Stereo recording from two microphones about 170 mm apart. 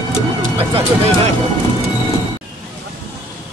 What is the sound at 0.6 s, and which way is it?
Speech, 35° right (ahead or behind).